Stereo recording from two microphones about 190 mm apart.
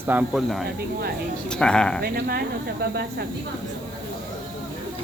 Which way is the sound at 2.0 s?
55° right (ahead or behind).